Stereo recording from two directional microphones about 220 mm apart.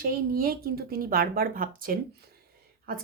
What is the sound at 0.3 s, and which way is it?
A woman's voice, 40° right (ahead or behind).